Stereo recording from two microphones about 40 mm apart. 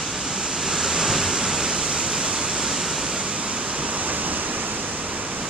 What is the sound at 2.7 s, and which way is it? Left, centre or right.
Waterfall, centre.